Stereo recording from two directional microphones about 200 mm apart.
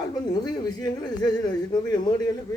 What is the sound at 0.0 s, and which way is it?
Speech, 20° left (ahead or behind).